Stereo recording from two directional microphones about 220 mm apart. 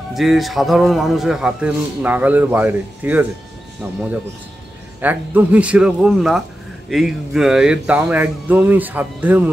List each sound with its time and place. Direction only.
0.1 s a man's voice: centre (ahead or behind)
5.0 s a man's voice: 5° right (ahead or behind)